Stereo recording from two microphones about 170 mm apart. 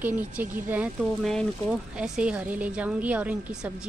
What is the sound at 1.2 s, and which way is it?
Speech, centre (ahead or behind).